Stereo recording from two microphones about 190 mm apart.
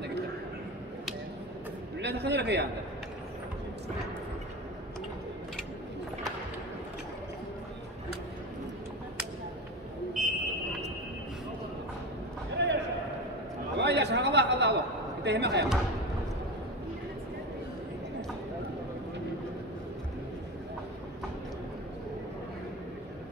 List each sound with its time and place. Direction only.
2.0 s a man's voice: 65° right (ahead or behind)
10.2 s vehicle: centre (ahead or behind)
12.5 s a sound: 65° right (ahead or behind)
15.2 s speech: 65° right (ahead or behind)